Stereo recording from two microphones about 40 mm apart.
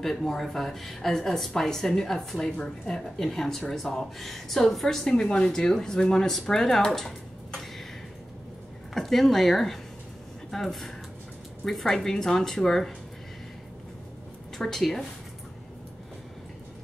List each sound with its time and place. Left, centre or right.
0.0 s speech: centre
5.0 s speech: left
8.9 s speech: centre
14.6 s speech: centre